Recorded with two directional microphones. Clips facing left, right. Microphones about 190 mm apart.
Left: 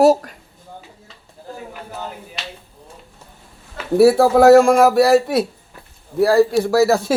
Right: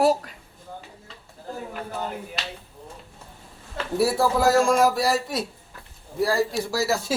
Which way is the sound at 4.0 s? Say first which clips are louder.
Left 10 dB; 65° left (ahead or behind).